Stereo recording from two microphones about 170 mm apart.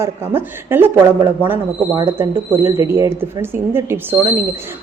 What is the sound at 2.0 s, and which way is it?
Speech, 15° right (ahead or behind).